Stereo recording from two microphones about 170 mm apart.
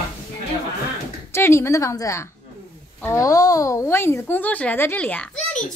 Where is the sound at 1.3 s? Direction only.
15° left (ahead or behind).